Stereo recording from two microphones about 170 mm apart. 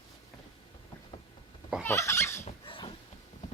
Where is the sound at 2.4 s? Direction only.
30° left (ahead or behind).